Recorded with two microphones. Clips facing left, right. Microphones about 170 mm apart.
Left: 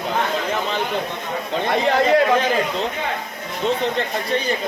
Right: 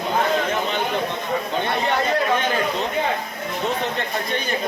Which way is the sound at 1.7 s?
90° left.